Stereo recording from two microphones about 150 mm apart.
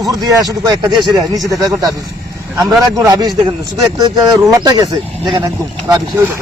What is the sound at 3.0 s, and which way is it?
Speech, 25° right (ahead or behind).